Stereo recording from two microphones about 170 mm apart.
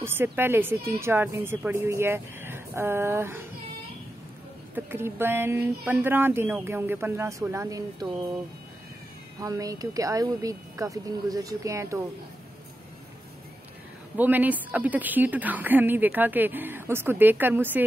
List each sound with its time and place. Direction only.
0.0 s a woman's voice: 15° right (ahead or behind)
4.7 s a woman's voice: 15° right (ahead or behind)
9.4 s a woman's voice: 20° right (ahead or behind)
14.1 s a woman's voice: 10° right (ahead or behind)